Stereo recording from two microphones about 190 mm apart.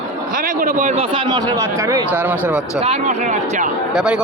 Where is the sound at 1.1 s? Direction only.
25° right (ahead or behind); by 2.4 s 10° right (ahead or behind).